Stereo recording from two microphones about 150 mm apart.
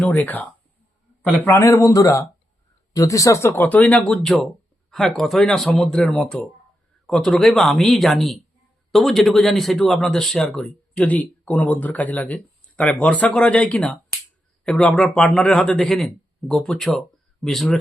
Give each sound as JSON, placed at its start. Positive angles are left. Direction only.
{"t": 0.0, "sound": "a man's voice", "side_deg": 10}